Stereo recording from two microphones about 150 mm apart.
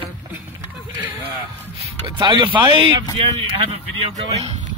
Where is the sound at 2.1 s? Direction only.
25° right (ahead or behind).